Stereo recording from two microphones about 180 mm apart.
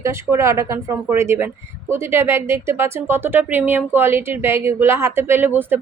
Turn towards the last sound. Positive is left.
turn(degrees=-10)  # may be behind; listen again after turning